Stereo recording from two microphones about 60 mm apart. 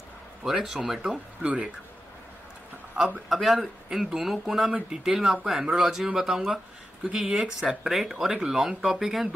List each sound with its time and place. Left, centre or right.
0.4 s speech: centre
2.9 s speech: centre
3.3 s speech: centre